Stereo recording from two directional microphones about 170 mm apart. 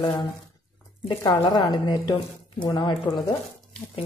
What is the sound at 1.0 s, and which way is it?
A woman's voice, 25° left (ahead or behind).